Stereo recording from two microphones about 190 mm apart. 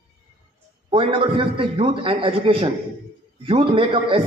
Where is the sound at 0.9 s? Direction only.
25° right (ahead or behind).